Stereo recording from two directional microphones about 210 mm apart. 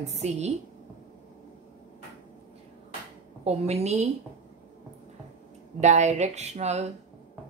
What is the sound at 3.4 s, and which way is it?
Speech, 30° right (ahead or behind).